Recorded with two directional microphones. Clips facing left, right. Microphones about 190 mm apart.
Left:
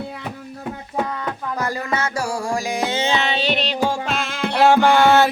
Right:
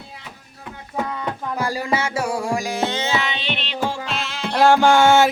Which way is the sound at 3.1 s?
30° left (ahead or behind).